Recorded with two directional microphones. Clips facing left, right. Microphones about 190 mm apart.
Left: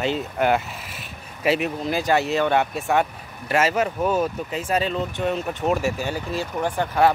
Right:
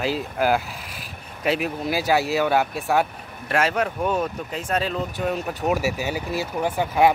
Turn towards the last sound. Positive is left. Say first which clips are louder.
# right 1 dB
turn(degrees=-10)  # may be behind; listen again after turning